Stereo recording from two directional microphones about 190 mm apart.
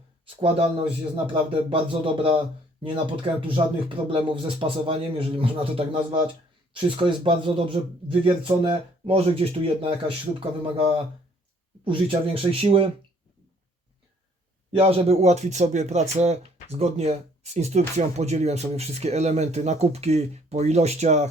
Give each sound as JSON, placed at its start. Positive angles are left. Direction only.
{"t": 0.3, "sound": "speech", "side_deg": -30}
{"t": 14.8, "sound": "speech", "side_deg": -30}